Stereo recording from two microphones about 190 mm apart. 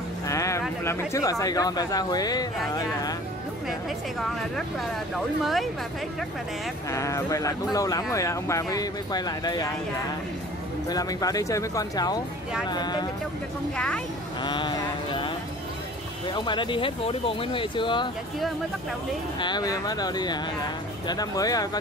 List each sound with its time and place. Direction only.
0.3 s speech: 15° left (ahead or behind)
5.4 s speech: centre (ahead or behind)
6.9 s speech: 15° left (ahead or behind)
10.9 s speech: 20° left (ahead or behind)
13.7 s speech: 5° left (ahead or behind)
14.4 s a sound: 25° left (ahead or behind)
16.3 s speech: 25° left (ahead or behind)
19.4 s speech: 20° left (ahead or behind)